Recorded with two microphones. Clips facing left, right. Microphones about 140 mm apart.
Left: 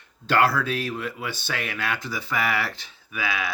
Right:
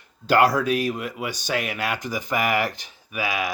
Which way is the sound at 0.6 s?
15° right (ahead or behind).